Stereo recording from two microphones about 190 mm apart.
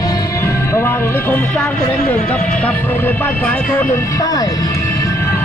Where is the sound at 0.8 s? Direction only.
10° left (ahead or behind).